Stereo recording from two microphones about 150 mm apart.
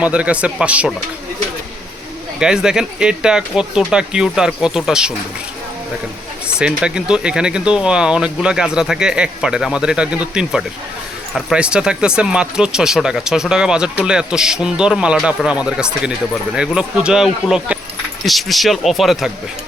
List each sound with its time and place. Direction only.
0.0 s speech: 10° right (ahead or behind)
2.4 s speech: 5° right (ahead or behind)
6.6 s speech: 5° right (ahead or behind)